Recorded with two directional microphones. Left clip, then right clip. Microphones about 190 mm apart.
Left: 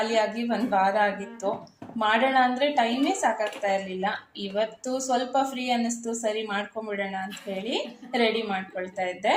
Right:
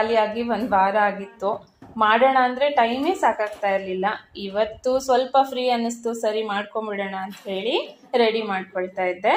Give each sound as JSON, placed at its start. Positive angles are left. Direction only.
{"t": 0.1, "sound": "a woman's voice", "side_deg": -25}